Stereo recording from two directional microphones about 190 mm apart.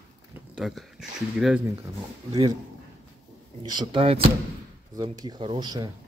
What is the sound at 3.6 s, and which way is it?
Speech, 25° right (ahead or behind).